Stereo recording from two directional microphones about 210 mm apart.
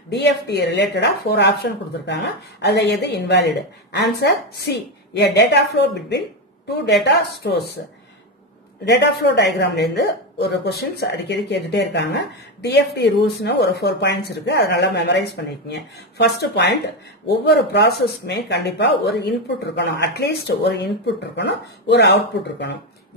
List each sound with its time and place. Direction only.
0.1 s speech: 55° left (ahead or behind)
8.8 s speech: 55° left (ahead or behind)